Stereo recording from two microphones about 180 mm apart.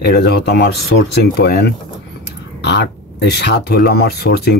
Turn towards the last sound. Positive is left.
turn(degrees=60)  # may be behind; listen again after turning